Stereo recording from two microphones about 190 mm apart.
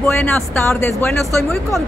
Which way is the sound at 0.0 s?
10° left (ahead or behind).